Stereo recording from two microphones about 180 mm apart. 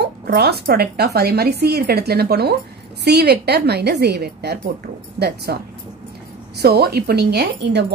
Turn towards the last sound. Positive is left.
turn(degrees=-70)  # may be behind; listen again after turning